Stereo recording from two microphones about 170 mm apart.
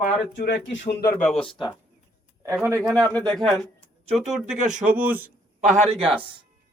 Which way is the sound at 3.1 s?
5° left (ahead or behind).